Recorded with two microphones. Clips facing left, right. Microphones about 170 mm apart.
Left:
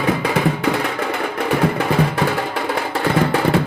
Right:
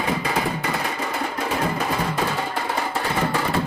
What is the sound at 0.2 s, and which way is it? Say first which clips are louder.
Music: left 5 dB; 65° left (ahead or behind).